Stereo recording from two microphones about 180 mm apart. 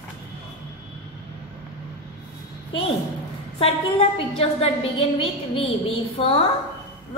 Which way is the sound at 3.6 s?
30° left (ahead or behind).